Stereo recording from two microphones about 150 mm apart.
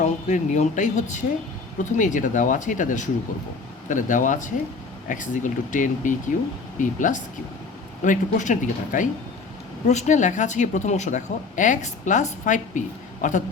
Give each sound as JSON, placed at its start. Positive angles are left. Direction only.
{"t": 0.0, "sound": "speech", "side_deg": 55}